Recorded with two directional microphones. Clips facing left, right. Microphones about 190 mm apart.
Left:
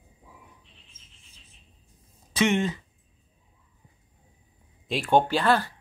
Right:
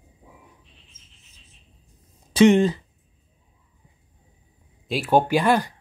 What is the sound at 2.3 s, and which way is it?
Speech, 35° right (ahead or behind).